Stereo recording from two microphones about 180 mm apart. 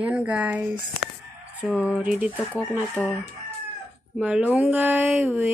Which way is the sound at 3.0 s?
10° right (ahead or behind).